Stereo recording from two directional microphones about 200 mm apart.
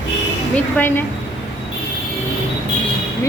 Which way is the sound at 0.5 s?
10° left (ahead or behind).